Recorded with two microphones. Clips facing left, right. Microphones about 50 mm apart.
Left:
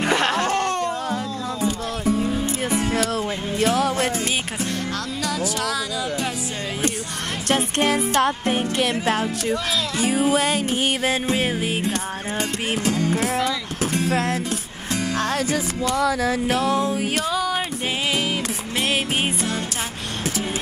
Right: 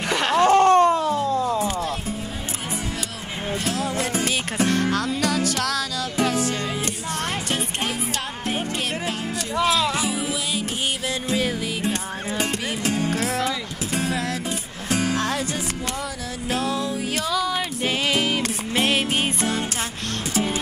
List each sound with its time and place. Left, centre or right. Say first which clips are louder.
0.4 s a sound: right 7 dB; right
4.6 s music: right 5 dB; centre
7.4 s music: left 6 dB; left
9.9 s music: left 6 dB; left
11.1 s music: left 3 dB; left
12.4 s music: left 1 dB; centre
16.4 s music: even; left
18.1 s music: right 1 dB; centre